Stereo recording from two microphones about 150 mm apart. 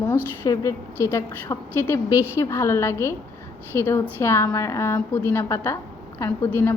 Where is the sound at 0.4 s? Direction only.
20° left (ahead or behind).